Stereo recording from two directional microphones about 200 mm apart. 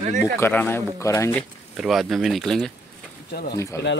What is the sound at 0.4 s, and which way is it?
Speech, 10° left (ahead or behind).